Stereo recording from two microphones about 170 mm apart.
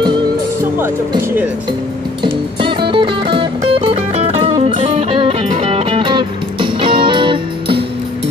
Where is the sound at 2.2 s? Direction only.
30° right (ahead or behind).